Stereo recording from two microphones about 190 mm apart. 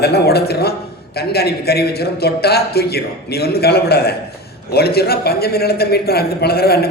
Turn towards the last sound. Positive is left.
turn(degrees=55)  # may be behind; listen again after turning